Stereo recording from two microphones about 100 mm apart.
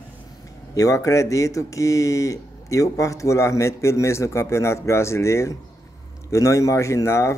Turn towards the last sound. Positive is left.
turn(degrees=30)  # may be behind; listen again after turning